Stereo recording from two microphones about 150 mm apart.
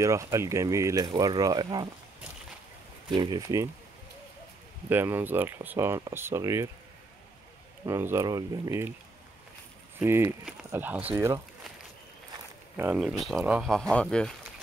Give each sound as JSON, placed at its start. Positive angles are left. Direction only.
{"t": 0.0, "sound": "speech", "side_deg": -20}
{"t": 3.1, "sound": "speech", "side_deg": -30}
{"t": 4.8, "sound": "speech", "side_deg": -15}
{"t": 7.8, "sound": "speech", "side_deg": -20}
{"t": 9.9, "sound": "speech", "side_deg": -15}
{"t": 12.7, "sound": "speech", "side_deg": -15}
{"t": 13.0, "sound": "speech", "side_deg": 0}